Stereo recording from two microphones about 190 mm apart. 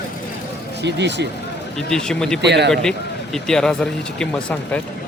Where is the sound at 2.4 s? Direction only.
65° right (ahead or behind).